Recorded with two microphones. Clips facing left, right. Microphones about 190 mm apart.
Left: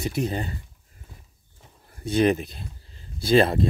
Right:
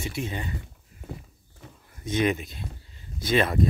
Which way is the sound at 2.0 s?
35° left (ahead or behind).